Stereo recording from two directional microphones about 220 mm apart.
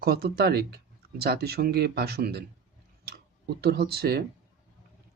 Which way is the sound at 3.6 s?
45° right (ahead or behind).